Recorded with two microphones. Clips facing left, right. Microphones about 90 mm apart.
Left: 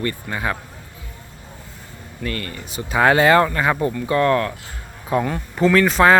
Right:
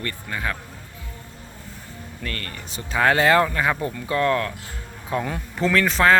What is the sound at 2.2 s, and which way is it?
Speech, 10° left (ahead or behind).